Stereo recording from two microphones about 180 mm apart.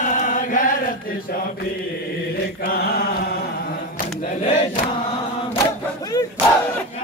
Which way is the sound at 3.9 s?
45° left (ahead or behind).